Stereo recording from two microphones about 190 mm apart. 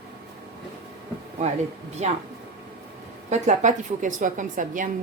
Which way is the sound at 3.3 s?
40° right (ahead or behind).